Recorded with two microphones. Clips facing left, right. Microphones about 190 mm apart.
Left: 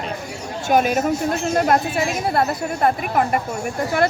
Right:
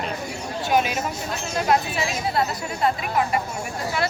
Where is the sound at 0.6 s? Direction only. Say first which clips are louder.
Left 5 dB; 45° left (ahead or behind).